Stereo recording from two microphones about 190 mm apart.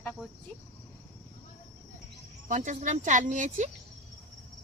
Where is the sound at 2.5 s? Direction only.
40° right (ahead or behind).